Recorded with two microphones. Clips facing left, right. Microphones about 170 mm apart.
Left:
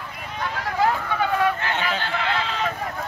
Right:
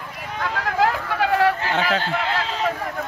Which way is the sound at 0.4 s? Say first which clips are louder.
Right 2 dB; 85° right.